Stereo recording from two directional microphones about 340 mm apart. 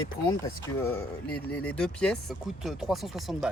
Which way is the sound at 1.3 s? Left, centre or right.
Centre.